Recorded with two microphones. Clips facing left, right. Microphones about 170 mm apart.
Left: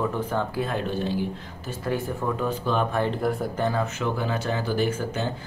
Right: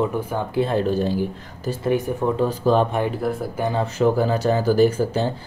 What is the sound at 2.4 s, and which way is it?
Speech, 35° right (ahead or behind).